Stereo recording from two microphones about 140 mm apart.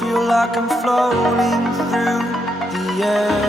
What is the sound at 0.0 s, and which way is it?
Music, centre (ahead or behind).